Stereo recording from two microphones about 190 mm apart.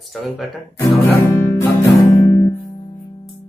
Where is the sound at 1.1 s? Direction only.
15° left (ahead or behind).